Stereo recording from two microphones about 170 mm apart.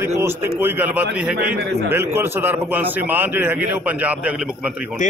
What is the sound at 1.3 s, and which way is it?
Speech, 65° right (ahead or behind).